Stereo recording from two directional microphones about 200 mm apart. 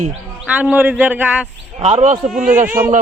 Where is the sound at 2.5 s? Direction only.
10° right (ahead or behind).